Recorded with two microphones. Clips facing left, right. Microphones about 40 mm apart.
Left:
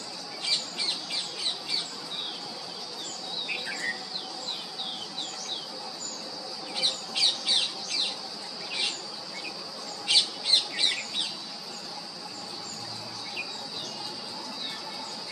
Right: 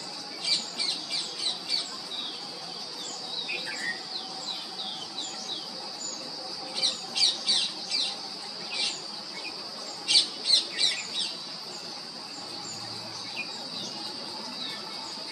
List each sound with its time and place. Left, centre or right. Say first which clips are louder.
3.4 s rodents: left 1 dB; centre
6.8 s bird: left 1 dB; left
10.0 s squawk: left 1 dB; left